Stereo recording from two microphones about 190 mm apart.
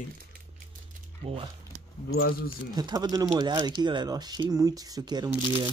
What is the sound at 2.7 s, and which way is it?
Speech, 20° right (ahead or behind).